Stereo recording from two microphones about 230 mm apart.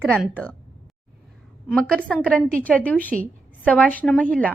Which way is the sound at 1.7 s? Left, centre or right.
Centre.